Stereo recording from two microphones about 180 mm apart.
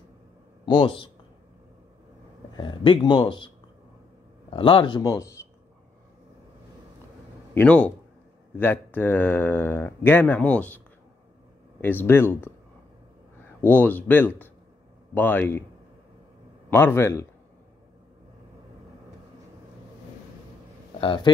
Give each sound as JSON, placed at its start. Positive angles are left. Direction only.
{"t": 0.7, "sound": "speech", "side_deg": 25}
{"t": 2.5, "sound": "speech", "side_deg": 25}
{"t": 7.5, "sound": "speech", "side_deg": 5}
{"t": 11.8, "sound": "speech", "side_deg": 10}
{"t": 13.6, "sound": "speech", "side_deg": 10}
{"t": 16.7, "sound": "speech", "side_deg": 15}
{"t": 21.0, "sound": "speech", "side_deg": 25}